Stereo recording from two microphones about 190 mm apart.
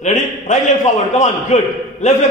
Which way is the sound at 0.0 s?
40° left (ahead or behind).